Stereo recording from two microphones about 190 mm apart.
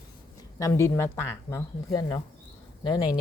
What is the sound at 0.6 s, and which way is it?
A woman's voice, 15° left (ahead or behind).